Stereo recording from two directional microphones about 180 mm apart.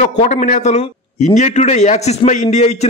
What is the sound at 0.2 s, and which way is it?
A man's voice, 40° left (ahead or behind).